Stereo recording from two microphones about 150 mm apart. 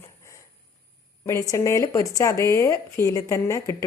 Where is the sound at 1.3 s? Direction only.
20° left (ahead or behind).